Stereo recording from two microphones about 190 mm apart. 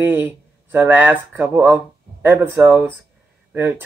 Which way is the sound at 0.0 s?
10° right (ahead or behind).